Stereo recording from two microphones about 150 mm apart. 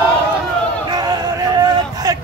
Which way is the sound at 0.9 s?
25° right (ahead or behind).